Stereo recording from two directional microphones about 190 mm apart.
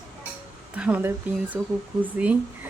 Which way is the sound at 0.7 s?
5° right (ahead or behind).